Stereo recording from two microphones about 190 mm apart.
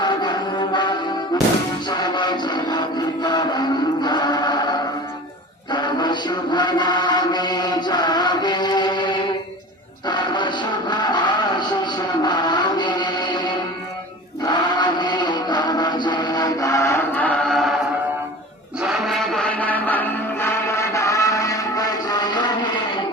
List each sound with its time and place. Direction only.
0.0 s music: 25° left (ahead or behind)
5.7 s music: 25° left (ahead or behind)
14.4 s music: 25° left (ahead or behind); by 17.7 s centre (ahead or behind)
18.8 s music: centre (ahead or behind); by 22.7 s 20° left (ahead or behind)